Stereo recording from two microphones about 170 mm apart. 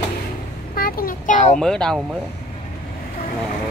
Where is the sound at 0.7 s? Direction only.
60° left (ahead or behind).